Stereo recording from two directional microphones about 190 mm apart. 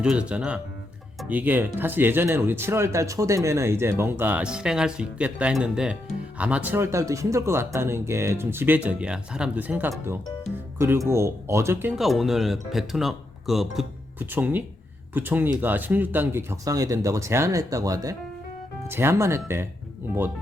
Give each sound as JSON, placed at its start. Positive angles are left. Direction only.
{"t": 0.0, "sound": "speech", "side_deg": -5}